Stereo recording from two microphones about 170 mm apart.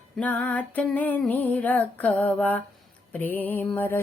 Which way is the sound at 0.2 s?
10° left (ahead or behind).